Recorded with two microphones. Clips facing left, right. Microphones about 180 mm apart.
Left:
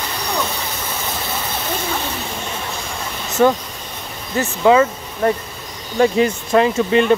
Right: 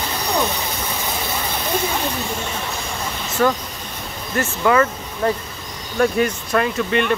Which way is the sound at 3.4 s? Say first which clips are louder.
Left 4 dB; 15° left (ahead or behind).